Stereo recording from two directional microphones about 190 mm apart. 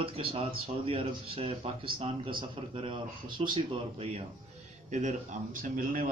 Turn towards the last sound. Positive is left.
turn(degrees=-45)  # may be behind; listen again after turning